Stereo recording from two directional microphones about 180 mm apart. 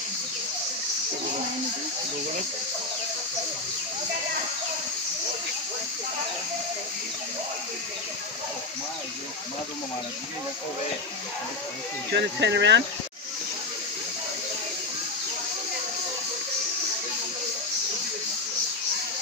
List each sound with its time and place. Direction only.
12.1 s speech: 75° right (ahead or behind)